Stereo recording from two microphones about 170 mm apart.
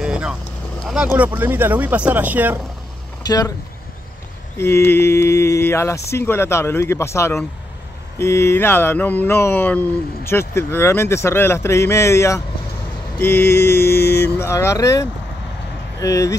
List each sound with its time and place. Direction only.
0.0 s vehicle: 5° right (ahead or behind)
1.1 s speech: 10° right (ahead or behind)
3.3 s speech: 20° left (ahead or behind)
4.6 s a sound: 15° left (ahead or behind)
16.0 s speech: 20° left (ahead or behind)